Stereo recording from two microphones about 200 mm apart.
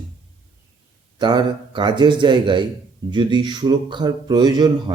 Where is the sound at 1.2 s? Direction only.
20° right (ahead or behind).